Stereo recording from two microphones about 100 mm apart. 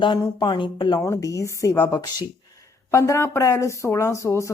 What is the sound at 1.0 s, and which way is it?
Speech, 30° left (ahead or behind).